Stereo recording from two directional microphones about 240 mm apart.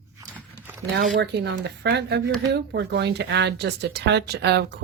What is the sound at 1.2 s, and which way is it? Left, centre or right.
Speech, right.